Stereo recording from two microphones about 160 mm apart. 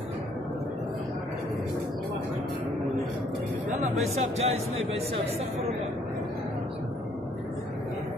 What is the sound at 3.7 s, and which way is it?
Speech, 45° right (ahead or behind).